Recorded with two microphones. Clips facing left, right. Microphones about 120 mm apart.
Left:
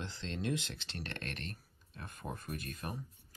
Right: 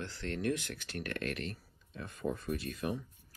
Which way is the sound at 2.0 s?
50° left (ahead or behind).